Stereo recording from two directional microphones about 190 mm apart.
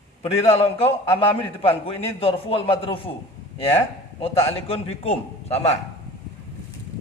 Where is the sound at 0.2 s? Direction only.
35° left (ahead or behind).